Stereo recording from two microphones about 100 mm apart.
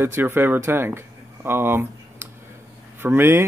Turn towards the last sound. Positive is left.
turn(degrees=-25)  # may be behind; listen again after turning